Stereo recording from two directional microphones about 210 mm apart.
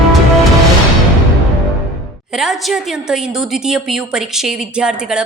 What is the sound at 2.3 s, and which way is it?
A woman's voice, centre (ahead or behind).